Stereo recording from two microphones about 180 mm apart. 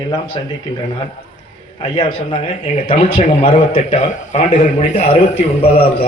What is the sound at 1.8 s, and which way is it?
Speech, 30° left (ahead or behind).